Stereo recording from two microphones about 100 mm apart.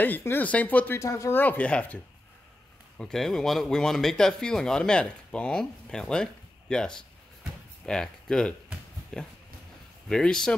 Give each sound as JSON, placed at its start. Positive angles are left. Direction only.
{"t": 0.0, "sound": "speech", "side_deg": 20}
{"t": 0.9, "sound": "speech", "side_deg": 30}
{"t": 1.3, "sound": "speech", "side_deg": 20}
{"t": 3.0, "sound": "speech", "side_deg": 5}